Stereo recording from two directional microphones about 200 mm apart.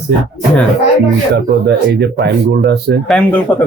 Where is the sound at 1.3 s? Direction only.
60° right (ahead or behind).